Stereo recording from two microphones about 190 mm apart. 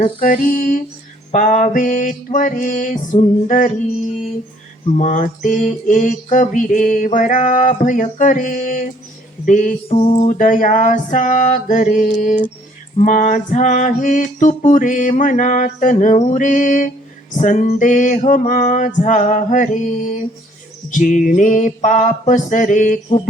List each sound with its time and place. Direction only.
0.0 s mantra: 45° left (ahead or behind)
1.3 s music: 40° left (ahead or behind)
4.9 s mantra: 40° left (ahead or behind)
10.0 s a sound: 30° left (ahead or behind)
10.2 s mantra: 40° left (ahead or behind)
13.0 s music: 40° left (ahead or behind)